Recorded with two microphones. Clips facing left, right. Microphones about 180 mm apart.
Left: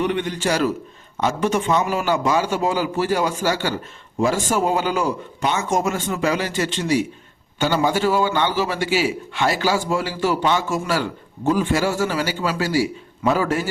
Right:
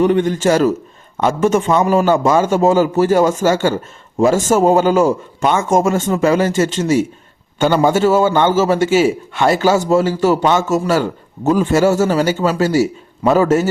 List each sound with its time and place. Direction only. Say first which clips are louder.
0.0 s a man's voice: right 8 dB; 45° right (ahead or behind)